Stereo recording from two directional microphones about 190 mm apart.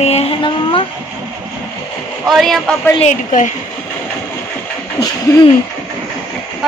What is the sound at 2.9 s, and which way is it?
Speech, 40° left (ahead or behind).